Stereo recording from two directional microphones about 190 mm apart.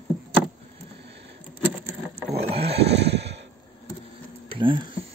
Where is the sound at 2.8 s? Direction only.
60° right (ahead or behind).